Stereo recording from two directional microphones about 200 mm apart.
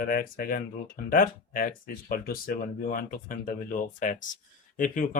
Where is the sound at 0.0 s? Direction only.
45° left (ahead or behind).